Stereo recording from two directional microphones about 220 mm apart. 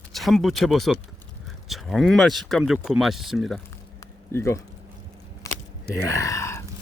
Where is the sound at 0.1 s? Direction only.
Centre (ahead or behind).